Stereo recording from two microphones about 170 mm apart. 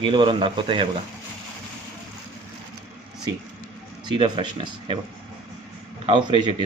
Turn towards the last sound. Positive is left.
turn(degrees=-30)  # may be behind; listen again after turning